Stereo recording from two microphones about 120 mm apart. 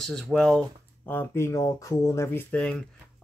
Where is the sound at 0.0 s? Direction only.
5° left (ahead or behind).